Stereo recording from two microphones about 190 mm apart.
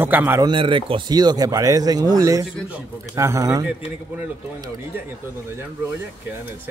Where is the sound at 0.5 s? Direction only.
25° right (ahead or behind).